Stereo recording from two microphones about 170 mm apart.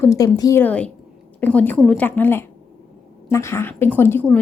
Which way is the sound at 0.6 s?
10° left (ahead or behind).